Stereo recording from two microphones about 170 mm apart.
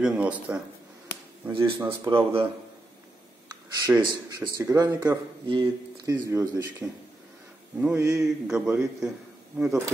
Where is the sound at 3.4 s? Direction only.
25° right (ahead or behind).